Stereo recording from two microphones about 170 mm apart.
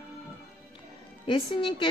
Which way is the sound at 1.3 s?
30° left (ahead or behind).